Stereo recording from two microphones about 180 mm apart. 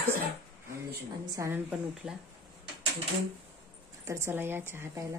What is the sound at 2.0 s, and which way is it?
Speech, 5° right (ahead or behind).